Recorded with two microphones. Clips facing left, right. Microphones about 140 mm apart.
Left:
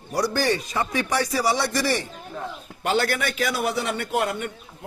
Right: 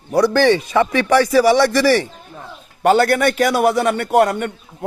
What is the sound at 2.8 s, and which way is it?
A man's voice, 50° right (ahead or behind).